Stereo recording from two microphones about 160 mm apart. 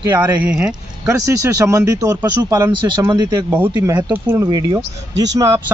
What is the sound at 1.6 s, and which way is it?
Speech, 20° right (ahead or behind).